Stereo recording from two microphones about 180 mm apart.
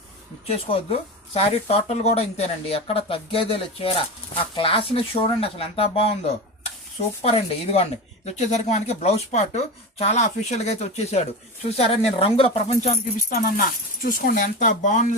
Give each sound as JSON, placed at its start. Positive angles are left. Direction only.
{"t": 0.4, "sound": "speech", "side_deg": 35}
{"t": 7.2, "sound": "speech", "side_deg": 35}
{"t": 13.3, "sound": "speech", "side_deg": 55}